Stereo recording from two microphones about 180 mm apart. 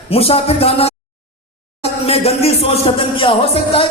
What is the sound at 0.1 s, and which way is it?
Speech, 35° left (ahead or behind).